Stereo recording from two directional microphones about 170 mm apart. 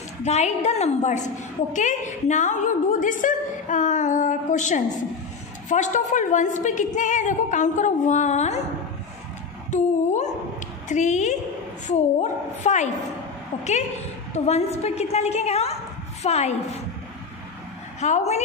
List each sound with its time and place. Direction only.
0.2 s a woman's voice: 40° left (ahead or behind)
9.7 s a woman's voice: 45° left (ahead or behind)
14.3 s a woman's voice: 40° left (ahead or behind)
18.0 s a woman's voice: 40° left (ahead or behind)